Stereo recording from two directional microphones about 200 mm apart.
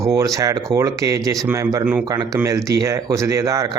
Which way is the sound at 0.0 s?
15° right (ahead or behind).